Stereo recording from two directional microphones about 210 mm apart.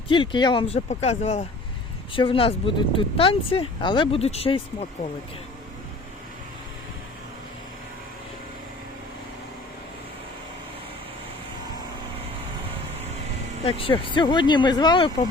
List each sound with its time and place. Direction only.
0.1 s speech: 25° left (ahead or behind)
13.7 s speech: 25° left (ahead or behind)